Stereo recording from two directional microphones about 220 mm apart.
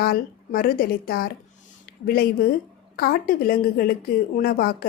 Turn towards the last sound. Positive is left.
turn(degrees=40)  # may be behind; listen again after turning